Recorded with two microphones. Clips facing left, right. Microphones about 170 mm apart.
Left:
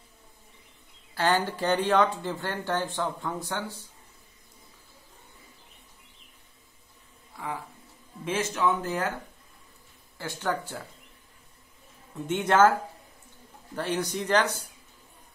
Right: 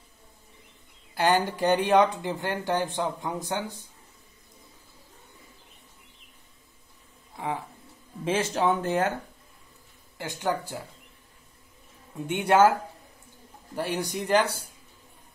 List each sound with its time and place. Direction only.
1.1 s speech: 15° right (ahead or behind)
7.3 s a sound: 25° right (ahead or behind)
8.3 s speech: 30° right (ahead or behind)
10.1 s speech: 15° right (ahead or behind)
12.3 s speech: 10° right (ahead or behind)
13.7 s speech: 10° right (ahead or behind)